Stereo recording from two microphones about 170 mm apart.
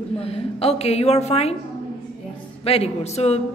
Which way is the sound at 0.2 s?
35° left (ahead or behind).